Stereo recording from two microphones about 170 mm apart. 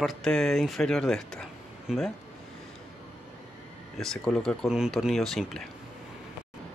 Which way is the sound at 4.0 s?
Centre (ahead or behind).